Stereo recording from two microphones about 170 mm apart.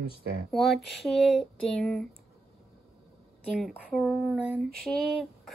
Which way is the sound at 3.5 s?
Centre (ahead or behind).